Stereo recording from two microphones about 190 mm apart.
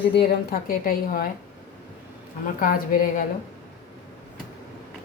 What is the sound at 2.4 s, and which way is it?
Speech, 45° left (ahead or behind).